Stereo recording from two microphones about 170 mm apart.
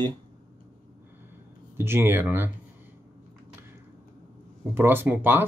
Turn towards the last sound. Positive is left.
turn(degrees=-10)  # may be behind; listen again after turning